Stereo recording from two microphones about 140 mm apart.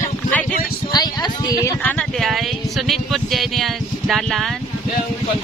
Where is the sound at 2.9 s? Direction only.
Centre (ahead or behind).